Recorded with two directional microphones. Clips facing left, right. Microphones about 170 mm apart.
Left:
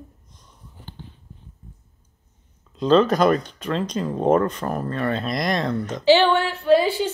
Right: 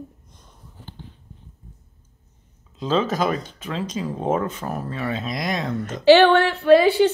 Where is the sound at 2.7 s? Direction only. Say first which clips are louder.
Left 5 dB; 5° right (ahead or behind).